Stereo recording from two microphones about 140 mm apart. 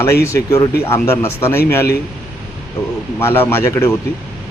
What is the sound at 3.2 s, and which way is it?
Speech, 15° left (ahead or behind).